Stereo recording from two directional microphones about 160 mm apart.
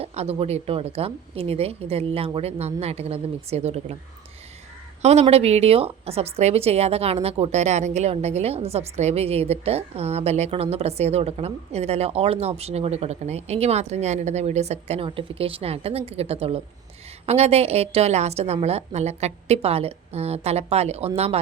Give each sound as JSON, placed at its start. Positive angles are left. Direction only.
{"t": 0.0, "sound": "a woman's voice", "side_deg": -40}
{"t": 5.2, "sound": "a woman's voice", "side_deg": -40}